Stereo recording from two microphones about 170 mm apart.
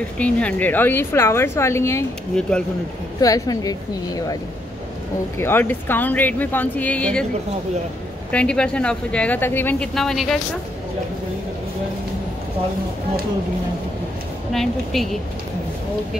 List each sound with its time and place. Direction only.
0.2 s a woman's voice: 10° left (ahead or behind)
3.2 s speech: 20° left (ahead or behind)
5.4 s a woman's voice: 10° left (ahead or behind)
8.3 s a woman's voice: 5° left (ahead or behind)
14.5 s a woman's voice: centre (ahead or behind)